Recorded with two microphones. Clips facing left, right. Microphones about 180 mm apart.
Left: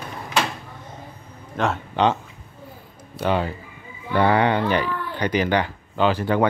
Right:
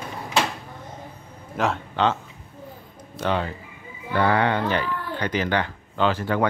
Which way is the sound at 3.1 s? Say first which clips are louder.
Left 2 dB; 10° left (ahead or behind).